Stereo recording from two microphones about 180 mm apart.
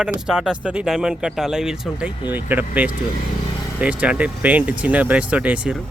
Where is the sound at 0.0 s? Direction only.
5° right (ahead or behind).